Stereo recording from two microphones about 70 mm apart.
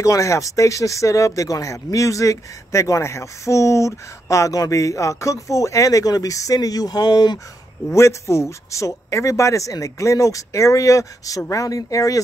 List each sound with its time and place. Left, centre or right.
0.0 s speech: left
7.9 s speech: left